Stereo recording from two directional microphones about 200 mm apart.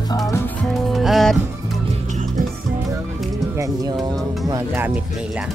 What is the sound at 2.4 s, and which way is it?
Music, 45° right (ahead or behind).